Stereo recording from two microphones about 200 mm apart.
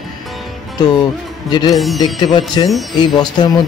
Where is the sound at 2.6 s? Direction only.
25° left (ahead or behind).